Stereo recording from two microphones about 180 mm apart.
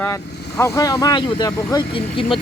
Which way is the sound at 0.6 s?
20° left (ahead or behind).